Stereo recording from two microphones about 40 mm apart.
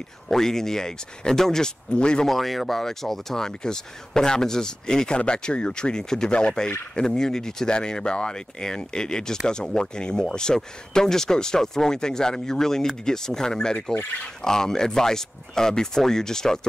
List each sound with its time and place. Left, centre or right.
0.3 s speech: centre
2.2 s speech: centre